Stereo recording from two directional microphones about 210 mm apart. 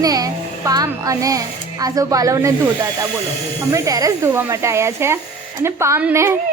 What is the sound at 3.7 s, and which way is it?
Speech, 15° right (ahead or behind).